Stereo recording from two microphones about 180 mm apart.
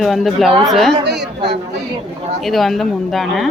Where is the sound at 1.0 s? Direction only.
70° right (ahead or behind).